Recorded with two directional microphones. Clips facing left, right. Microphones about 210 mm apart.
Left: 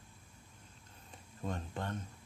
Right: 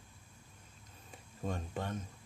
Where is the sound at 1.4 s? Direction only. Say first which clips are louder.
Right 1 dB; 5° right (ahead or behind).